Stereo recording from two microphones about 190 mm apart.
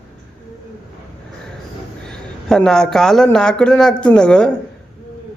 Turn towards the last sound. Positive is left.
turn(degrees=5)  # may be behind; listen again after turning